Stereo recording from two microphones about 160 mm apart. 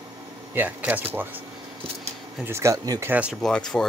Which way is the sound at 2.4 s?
15° right (ahead or behind).